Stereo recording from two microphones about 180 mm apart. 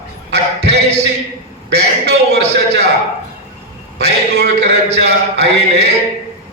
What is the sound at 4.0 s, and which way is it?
A man's voice, 65° right (ahead or behind).